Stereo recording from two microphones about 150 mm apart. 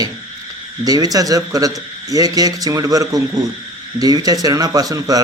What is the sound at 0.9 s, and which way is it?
A man's voice, 25° right (ahead or behind).